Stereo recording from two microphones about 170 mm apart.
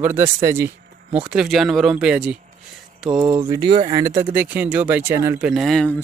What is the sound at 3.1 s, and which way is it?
Speech, 25° right (ahead or behind).